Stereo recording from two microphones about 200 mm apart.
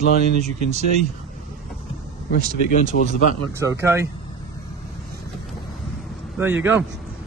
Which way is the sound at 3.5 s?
15° right (ahead or behind).